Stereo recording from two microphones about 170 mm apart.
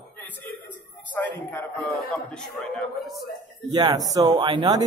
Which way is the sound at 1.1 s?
10° left (ahead or behind).